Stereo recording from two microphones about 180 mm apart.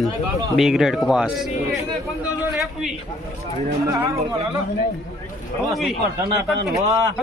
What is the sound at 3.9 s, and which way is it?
Speech, 15° right (ahead or behind).